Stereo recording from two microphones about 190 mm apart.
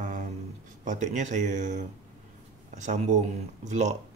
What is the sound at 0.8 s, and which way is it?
Speech, 40° right (ahead or behind).